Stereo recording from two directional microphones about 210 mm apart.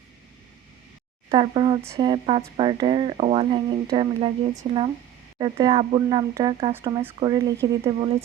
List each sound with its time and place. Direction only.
1.3 s speech: 25° right (ahead or behind)